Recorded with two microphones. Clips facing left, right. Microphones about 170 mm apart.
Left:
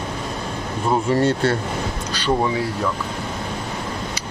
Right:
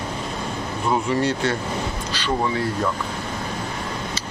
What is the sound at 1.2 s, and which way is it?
Speech, 50° left (ahead or behind).